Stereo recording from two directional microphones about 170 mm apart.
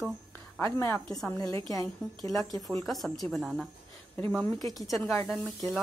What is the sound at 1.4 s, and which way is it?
Speech, 25° right (ahead or behind).